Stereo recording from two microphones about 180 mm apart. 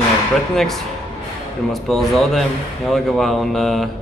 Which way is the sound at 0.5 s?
Centre (ahead or behind).